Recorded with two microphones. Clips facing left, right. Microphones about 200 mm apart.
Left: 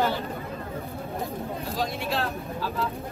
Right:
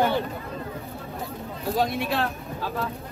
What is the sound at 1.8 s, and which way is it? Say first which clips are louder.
Speech: right 4 dB; 55° right (ahead or behind).